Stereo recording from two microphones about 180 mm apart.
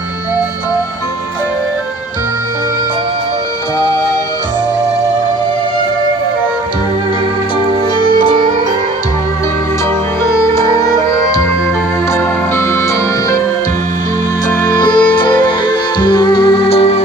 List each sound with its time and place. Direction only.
8.0 s music: 25° left (ahead or behind)
10.4 s music: 15° left (ahead or behind)
14.6 s music: 20° left (ahead or behind)